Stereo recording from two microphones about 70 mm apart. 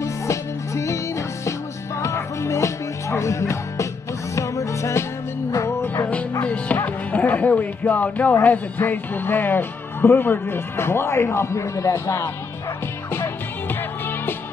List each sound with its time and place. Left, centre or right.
0.0 s music: left
6.4 s music: centre
8.5 s speech: left
13.1 s music: left